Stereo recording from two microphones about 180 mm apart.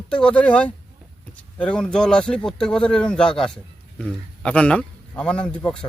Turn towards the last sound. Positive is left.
turn(degrees=5)  # may be behind; listen again after turning